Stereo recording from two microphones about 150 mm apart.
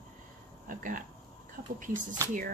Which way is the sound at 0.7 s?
65° right (ahead or behind).